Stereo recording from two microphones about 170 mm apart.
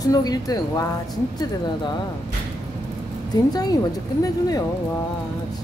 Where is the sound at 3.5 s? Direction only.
20° left (ahead or behind).